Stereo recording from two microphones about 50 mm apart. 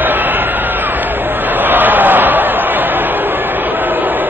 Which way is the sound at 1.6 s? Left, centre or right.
Right.